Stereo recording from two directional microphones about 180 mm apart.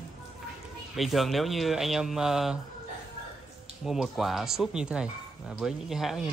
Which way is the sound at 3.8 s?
Centre (ahead or behind).